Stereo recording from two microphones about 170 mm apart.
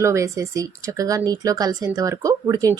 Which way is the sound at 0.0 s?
15° right (ahead or behind).